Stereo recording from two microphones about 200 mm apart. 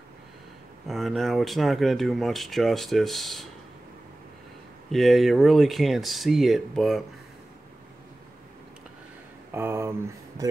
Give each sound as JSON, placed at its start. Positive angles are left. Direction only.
{"t": 0.8, "sound": "speech", "side_deg": 0}
{"t": 4.9, "sound": "speech", "side_deg": 0}
{"t": 9.5, "sound": "speech", "side_deg": -10}